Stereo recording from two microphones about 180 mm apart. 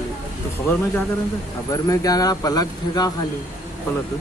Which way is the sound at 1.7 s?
20° left (ahead or behind).